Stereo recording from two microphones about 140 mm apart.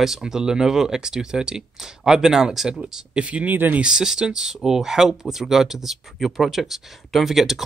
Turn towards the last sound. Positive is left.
turn(degrees=0)  # may be behind; listen again after turning